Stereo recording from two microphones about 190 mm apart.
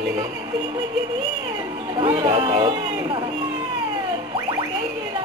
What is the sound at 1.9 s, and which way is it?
Speech, 25° right (ahead or behind).